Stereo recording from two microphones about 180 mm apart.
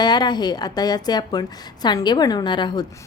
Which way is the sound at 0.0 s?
25° left (ahead or behind).